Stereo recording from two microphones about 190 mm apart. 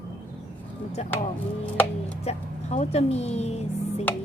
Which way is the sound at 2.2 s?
35° left (ahead or behind).